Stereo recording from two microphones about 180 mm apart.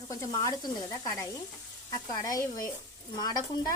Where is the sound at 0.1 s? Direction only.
20° left (ahead or behind).